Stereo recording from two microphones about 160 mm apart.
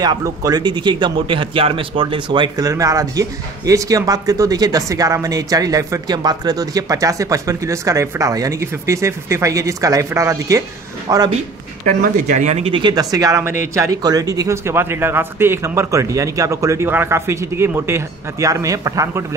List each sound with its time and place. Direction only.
0.0 s a man's voice: 25° right (ahead or behind)
11.8 s a man's voice: 55° right (ahead or behind); by 19.2 s 20° right (ahead or behind)